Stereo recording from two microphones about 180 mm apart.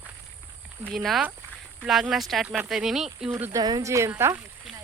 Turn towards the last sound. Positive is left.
turn(degrees=-15)  # may be behind; listen again after turning